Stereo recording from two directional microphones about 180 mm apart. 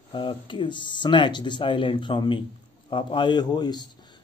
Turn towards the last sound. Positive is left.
turn(degrees=25)  # may be behind; listen again after turning